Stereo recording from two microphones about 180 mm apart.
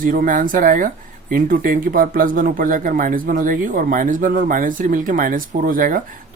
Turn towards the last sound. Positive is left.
turn(degrees=-50)  # may be behind; listen again after turning